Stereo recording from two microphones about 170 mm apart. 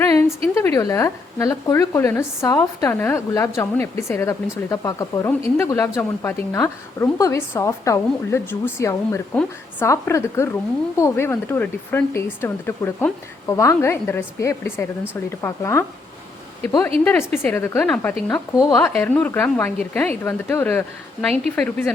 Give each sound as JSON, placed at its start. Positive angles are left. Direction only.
{"t": 0.0, "sound": "a sound", "side_deg": 15}
{"t": 0.5, "sound": "speech", "side_deg": 15}
{"t": 17.0, "sound": "speech", "side_deg": 10}